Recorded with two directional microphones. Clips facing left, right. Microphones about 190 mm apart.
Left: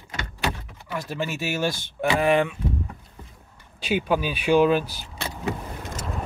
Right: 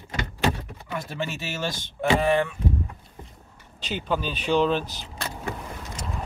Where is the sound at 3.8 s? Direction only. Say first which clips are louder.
Left 4 dB; 10° left (ahead or behind).